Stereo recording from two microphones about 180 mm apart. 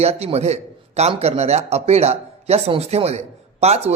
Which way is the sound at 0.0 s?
35° right (ahead or behind).